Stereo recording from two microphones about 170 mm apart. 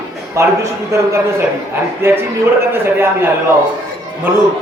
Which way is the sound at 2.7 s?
15° right (ahead or behind).